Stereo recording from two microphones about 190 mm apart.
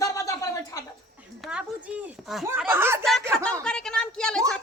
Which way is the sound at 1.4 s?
5° right (ahead or behind).